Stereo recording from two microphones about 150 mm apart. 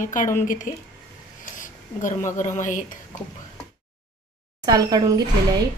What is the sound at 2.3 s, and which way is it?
Speech, 55° left (ahead or behind).